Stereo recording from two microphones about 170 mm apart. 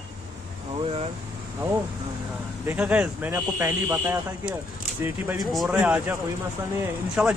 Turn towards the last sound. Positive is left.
turn(degrees=-5)  # may be behind; listen again after turning